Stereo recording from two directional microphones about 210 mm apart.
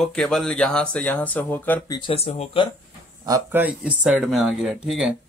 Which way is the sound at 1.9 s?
25° left (ahead or behind).